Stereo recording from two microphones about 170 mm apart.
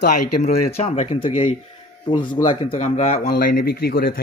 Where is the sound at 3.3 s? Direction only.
60° left (ahead or behind).